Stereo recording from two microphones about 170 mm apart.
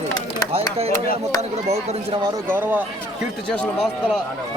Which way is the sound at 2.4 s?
10° right (ahead or behind).